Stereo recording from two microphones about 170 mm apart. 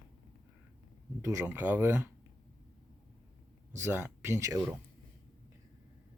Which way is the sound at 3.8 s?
15° right (ahead or behind).